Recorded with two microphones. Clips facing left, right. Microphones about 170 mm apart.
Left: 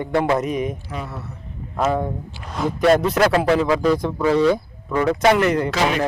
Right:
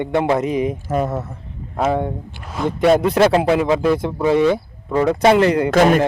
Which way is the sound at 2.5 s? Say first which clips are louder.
Right 2 dB; centre (ahead or behind).